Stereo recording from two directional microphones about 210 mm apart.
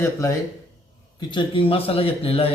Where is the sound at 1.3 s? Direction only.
25° left (ahead or behind).